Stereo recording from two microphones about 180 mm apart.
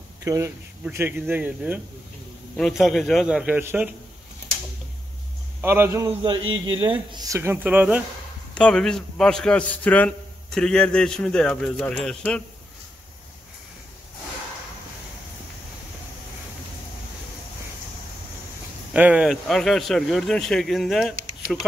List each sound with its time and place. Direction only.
0.2 s a man's voice: 15° right (ahead or behind)
5.6 s speech: 10° right (ahead or behind)
7.3 s speech: 10° right (ahead or behind)
8.5 s a man's voice: 5° left (ahead or behind)
18.9 s a man's voice: 5° right (ahead or behind)